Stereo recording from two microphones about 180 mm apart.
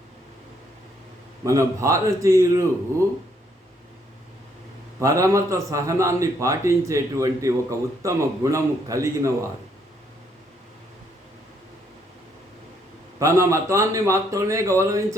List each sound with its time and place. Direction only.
1.5 s a man's voice: 15° right (ahead or behind)
4.9 s a man's voice: 15° right (ahead or behind)
13.1 s a man's voice: 15° right (ahead or behind)